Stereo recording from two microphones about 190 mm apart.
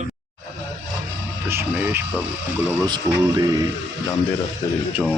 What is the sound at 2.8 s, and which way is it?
Speech, 20° right (ahead or behind).